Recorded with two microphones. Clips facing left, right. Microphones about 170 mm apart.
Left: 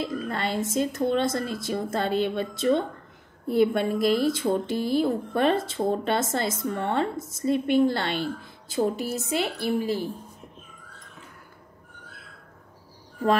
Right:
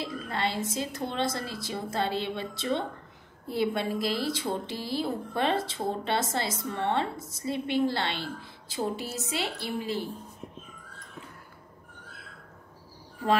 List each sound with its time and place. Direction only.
0.0 s speech: 50° left (ahead or behind)